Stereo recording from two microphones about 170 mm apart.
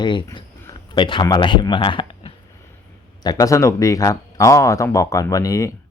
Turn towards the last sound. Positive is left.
turn(degrees=20)  # may be behind; listen again after turning